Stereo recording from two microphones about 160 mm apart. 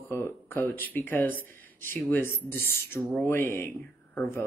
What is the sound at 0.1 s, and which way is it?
Speech, 15° left (ahead or behind).